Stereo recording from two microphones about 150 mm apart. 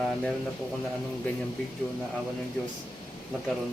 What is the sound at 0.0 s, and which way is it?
Speech, 5° left (ahead or behind).